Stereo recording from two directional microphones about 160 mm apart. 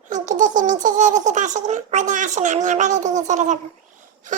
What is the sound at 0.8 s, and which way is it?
Speech, 50° right (ahead or behind).